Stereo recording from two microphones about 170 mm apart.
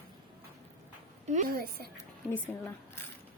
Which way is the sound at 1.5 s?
65° right (ahead or behind).